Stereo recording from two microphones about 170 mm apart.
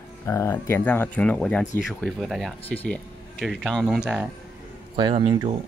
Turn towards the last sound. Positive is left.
turn(degrees=-30)  # may be behind; listen again after turning